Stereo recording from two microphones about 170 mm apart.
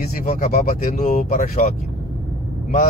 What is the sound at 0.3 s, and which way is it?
Speech, 55° left (ahead or behind).